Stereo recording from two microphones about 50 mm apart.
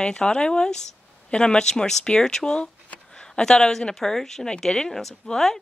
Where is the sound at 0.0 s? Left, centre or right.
Centre.